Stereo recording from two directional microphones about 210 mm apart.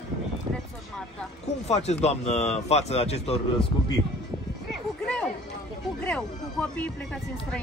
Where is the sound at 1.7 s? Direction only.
30° left (ahead or behind).